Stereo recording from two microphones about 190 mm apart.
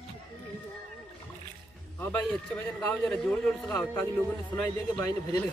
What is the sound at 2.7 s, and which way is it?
Speech, 5° left (ahead or behind).